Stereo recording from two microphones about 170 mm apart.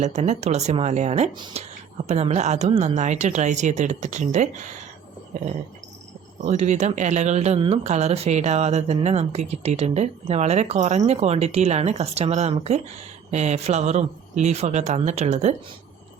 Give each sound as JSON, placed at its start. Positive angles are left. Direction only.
{"t": 0.0, "sound": "speech", "side_deg": -40}
{"t": 1.3, "sound": "speech", "side_deg": -25}
{"t": 2.0, "sound": "a woman's voice", "side_deg": -40}
{"t": 6.4, "sound": "a woman's voice", "side_deg": -45}